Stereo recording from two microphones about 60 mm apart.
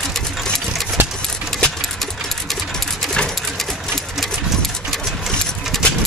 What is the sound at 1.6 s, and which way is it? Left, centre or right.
Sewing machine, centre.